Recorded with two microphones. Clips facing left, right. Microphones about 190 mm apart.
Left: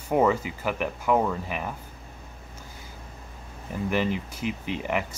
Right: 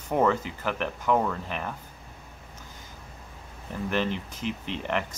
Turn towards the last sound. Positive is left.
turn(degrees=10)  # may be behind; listen again after turning